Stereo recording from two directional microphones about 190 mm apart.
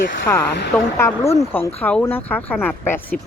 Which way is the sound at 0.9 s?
15° left (ahead or behind).